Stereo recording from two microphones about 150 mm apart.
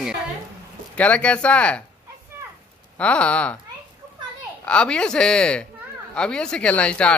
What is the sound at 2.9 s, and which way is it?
Speech, 10° left (ahead or behind).